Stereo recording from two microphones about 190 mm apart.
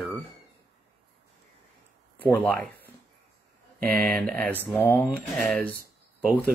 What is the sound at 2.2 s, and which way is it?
Speech, 10° left (ahead or behind).